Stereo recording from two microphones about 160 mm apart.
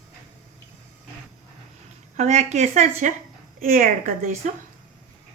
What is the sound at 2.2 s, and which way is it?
Speech, 45° right (ahead or behind).